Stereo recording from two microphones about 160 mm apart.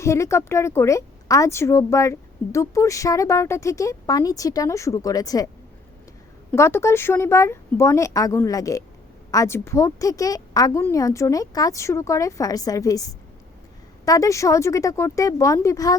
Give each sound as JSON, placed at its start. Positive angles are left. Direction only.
{"t": 0.0, "sound": "speech", "side_deg": 20}
{"t": 6.5, "sound": "speech", "side_deg": 15}